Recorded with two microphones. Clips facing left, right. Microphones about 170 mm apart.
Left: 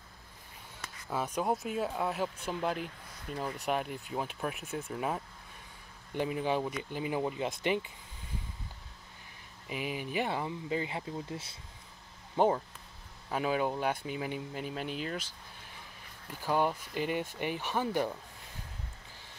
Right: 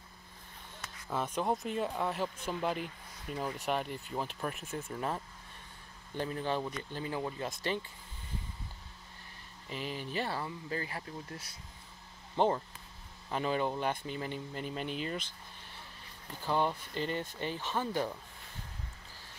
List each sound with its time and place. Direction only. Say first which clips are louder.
1.1 s speech: left 1 dB; 5° left (ahead or behind)
9.7 s speech: left 3 dB; 10° left (ahead or behind)
12.4 s speech: left 2 dB; 10° left (ahead or behind)